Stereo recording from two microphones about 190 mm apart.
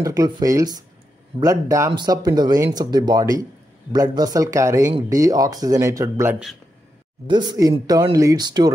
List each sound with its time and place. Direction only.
0.0 s speech: 20° right (ahead or behind)